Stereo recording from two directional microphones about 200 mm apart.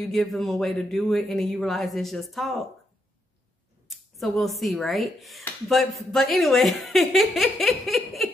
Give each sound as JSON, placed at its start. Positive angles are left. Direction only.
{"t": 0.1, "sound": "speech", "side_deg": 0}
{"t": 3.9, "sound": "speech", "side_deg": 0}